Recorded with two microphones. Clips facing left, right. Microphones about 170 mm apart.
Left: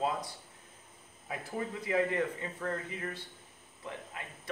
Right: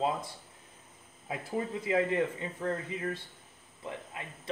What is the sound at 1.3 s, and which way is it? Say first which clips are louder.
Speech: right 3 dB; 25° right (ahead or behind).